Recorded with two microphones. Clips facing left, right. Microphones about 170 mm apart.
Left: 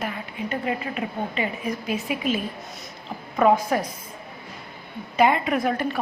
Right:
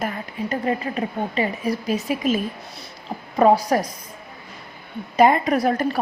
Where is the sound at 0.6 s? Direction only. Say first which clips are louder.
Right 5 dB; 35° right (ahead or behind).